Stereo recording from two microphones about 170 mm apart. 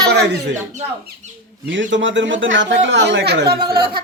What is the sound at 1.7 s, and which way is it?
Speech, 90° right.